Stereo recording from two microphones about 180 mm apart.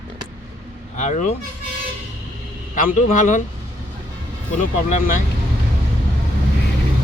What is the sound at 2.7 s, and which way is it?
Speech, 45° left (ahead or behind).